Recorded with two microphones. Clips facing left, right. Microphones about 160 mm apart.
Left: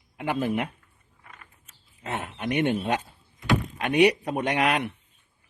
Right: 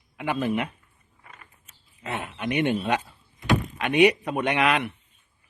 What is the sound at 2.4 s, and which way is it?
Speech, 45° left (ahead or behind).